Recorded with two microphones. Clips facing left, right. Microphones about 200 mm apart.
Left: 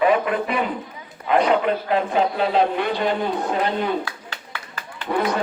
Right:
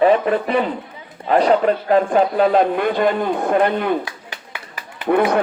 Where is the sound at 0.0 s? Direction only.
35° right (ahead or behind).